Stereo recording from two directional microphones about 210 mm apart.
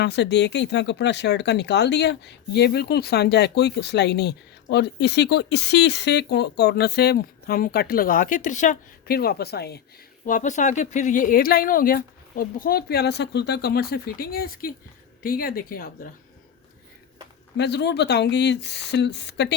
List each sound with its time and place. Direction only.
0.0 s speech: 55° left (ahead or behind)
10.2 s speech: 35° left (ahead or behind)
17.6 s speech: 55° left (ahead or behind)